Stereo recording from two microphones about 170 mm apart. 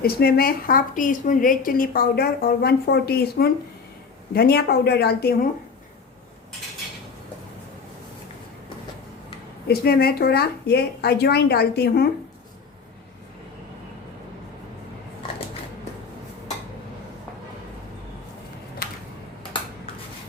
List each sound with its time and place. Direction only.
0.0 s a woman's voice: 65° left (ahead or behind)
9.6 s speech: 65° left (ahead or behind)